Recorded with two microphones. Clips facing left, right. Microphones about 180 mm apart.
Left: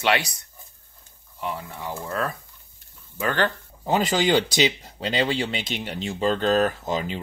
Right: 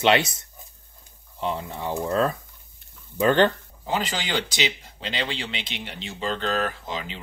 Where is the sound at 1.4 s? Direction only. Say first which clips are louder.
Right 3 dB; 25° right (ahead or behind).